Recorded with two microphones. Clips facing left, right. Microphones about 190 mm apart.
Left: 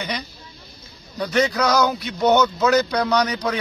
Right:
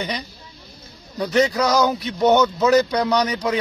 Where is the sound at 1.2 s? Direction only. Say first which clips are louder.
Right 2 dB; 25° right (ahead or behind).